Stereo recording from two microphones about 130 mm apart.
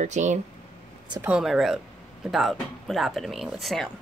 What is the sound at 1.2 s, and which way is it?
Speech, 5° right (ahead or behind).